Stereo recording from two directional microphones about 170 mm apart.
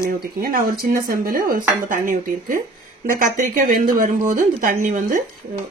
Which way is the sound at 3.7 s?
50° right (ahead or behind).